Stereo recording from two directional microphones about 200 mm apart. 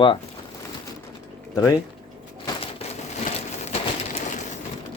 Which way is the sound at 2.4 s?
30° left (ahead or behind).